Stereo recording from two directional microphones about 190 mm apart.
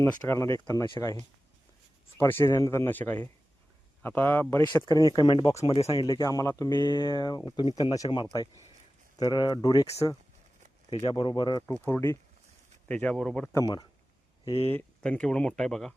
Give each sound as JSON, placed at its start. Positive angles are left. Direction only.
{"t": 0.0, "sound": "speech", "side_deg": 15}
{"t": 2.1, "sound": "speech", "side_deg": 15}
{"t": 13.5, "sound": "speech", "side_deg": 20}
{"t": 14.7, "sound": "speech", "side_deg": 10}